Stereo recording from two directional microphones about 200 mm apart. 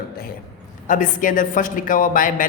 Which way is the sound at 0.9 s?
40° left (ahead or behind).